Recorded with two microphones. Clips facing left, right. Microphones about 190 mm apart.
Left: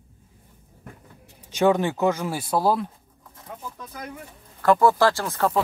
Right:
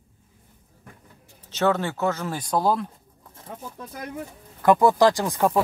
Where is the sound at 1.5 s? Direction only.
15° left (ahead or behind).